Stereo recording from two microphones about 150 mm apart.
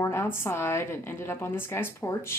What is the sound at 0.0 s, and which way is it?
A woman's voice, 15° left (ahead or behind).